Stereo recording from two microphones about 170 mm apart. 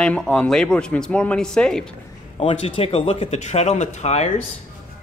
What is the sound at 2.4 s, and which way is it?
Speech, 35° left (ahead or behind).